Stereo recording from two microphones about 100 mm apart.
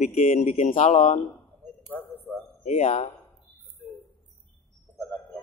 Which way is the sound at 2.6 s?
90° left.